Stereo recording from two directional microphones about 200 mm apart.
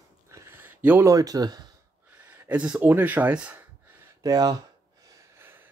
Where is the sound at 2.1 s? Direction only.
10° right (ahead or behind).